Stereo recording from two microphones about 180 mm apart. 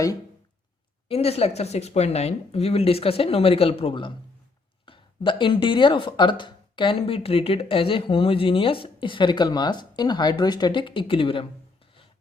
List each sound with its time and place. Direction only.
1.0 s speech: 35° left (ahead or behind)